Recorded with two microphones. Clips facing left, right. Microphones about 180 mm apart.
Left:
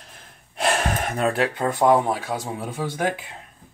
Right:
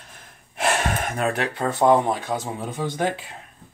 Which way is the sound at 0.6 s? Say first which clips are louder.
Even; 35° left (ahead or behind).